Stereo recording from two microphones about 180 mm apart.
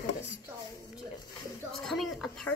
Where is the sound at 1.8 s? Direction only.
Centre (ahead or behind).